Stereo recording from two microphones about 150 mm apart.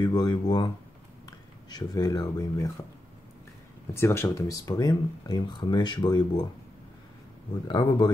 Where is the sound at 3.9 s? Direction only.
15° left (ahead or behind).